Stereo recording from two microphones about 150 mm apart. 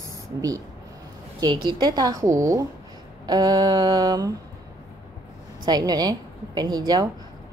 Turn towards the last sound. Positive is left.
turn(degrees=-25)  # may be behind; listen again after turning